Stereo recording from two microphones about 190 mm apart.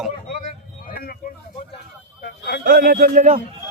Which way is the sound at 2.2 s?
60° left (ahead or behind).